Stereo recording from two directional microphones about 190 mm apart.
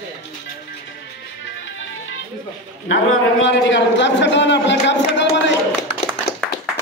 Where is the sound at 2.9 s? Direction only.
80° left.